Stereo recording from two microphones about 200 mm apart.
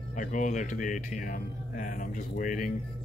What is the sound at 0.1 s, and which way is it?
Speech, 40° left (ahead or behind).